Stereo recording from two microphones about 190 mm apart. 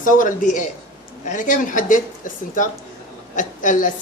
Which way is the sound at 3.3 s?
40° left (ahead or behind).